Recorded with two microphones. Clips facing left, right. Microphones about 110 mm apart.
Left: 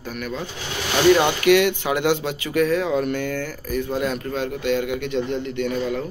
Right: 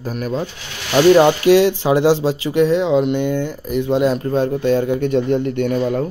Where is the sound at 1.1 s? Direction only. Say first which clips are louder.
Right 6 dB; 30° right (ahead or behind).